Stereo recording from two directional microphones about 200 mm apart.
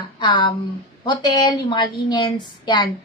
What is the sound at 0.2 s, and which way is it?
A woman's voice, 20° left (ahead or behind).